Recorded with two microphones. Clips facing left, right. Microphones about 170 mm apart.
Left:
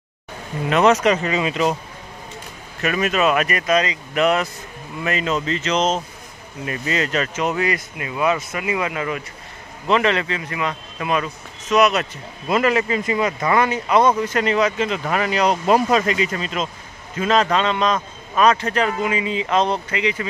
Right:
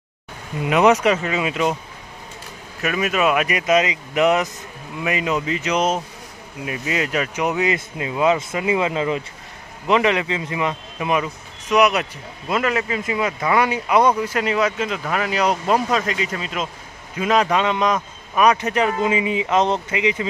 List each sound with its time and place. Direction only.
0.7 s a man's voice: 10° right (ahead or behind)
2.8 s a man's voice: 5° right (ahead or behind)
12.4 s a man's voice: centre (ahead or behind); by 20.2 s 20° right (ahead or behind)